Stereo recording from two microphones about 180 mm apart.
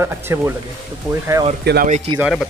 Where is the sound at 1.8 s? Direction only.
40° right (ahead or behind).